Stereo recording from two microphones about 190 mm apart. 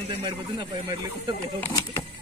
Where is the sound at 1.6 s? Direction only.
15° left (ahead or behind).